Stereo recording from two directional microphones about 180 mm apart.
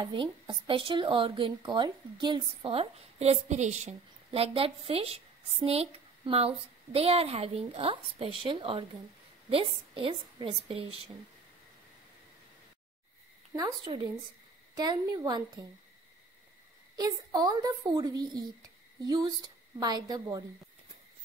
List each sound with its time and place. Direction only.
0.0 s speech: 25° right (ahead or behind)
13.9 s a child's voice: 25° right (ahead or behind)
16.9 s a child's voice: 20° right (ahead or behind)